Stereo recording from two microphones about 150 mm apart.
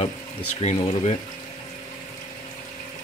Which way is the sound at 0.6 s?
45° left (ahead or behind).